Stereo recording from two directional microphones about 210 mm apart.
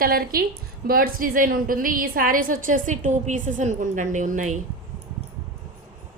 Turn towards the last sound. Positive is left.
turn(degrees=-35)  # may be behind; listen again after turning